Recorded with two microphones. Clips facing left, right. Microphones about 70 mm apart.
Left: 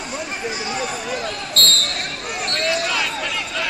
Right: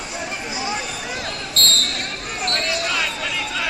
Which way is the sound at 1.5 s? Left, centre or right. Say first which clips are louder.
Left 1 dB; left.